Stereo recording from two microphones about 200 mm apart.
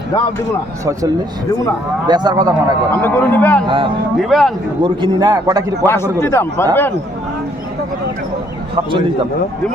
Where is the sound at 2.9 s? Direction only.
10° left (ahead or behind).